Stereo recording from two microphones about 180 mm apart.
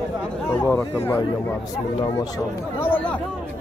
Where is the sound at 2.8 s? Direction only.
10° left (ahead or behind).